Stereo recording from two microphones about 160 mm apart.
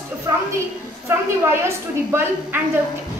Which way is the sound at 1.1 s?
15° right (ahead or behind).